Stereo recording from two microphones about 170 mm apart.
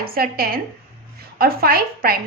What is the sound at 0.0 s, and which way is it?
A woman's voice, 60° right (ahead or behind).